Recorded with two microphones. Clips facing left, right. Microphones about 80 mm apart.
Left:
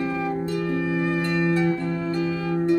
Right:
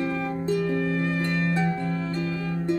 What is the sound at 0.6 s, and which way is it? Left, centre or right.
Harp, centre.